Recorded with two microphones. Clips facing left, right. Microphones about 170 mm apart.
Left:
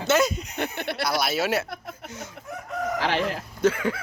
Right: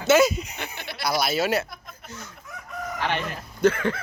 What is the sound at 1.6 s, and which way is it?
Speech, 65° left (ahead or behind).